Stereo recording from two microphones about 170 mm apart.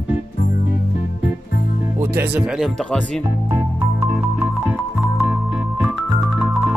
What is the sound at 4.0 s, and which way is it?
Music, 15° right (ahead or behind).